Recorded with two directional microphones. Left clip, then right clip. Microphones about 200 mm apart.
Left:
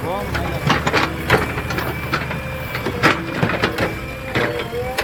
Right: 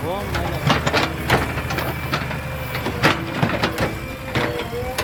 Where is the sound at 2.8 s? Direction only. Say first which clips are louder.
Left 2 dB; 55° right (ahead or behind).